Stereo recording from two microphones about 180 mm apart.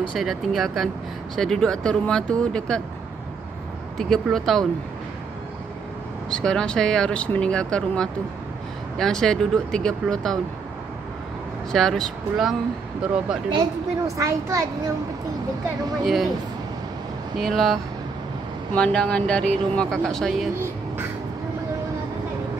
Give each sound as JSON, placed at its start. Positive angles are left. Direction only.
{"t": 0.2, "sound": "speech", "side_deg": 0}
{"t": 4.0, "sound": "speech", "side_deg": 0}
{"t": 6.3, "sound": "speech", "side_deg": 5}
{"t": 11.7, "sound": "speech", "side_deg": 0}
{"t": 13.5, "sound": "speech", "side_deg": -20}
{"t": 17.4, "sound": "speech", "side_deg": 0}
{"t": 18.8, "sound": "speech", "side_deg": 5}